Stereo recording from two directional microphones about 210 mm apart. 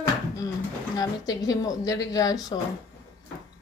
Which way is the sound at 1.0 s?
20° left (ahead or behind).